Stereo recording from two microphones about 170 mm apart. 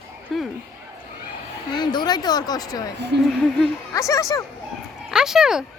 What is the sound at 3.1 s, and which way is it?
Speech, 85° right.